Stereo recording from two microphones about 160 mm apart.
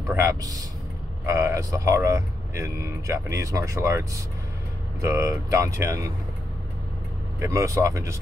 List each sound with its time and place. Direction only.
0.1 s speech: 20° right (ahead or behind)
7.3 s speech: 20° right (ahead or behind)